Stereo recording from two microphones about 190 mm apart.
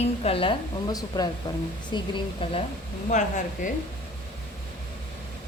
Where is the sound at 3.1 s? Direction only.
40° left (ahead or behind).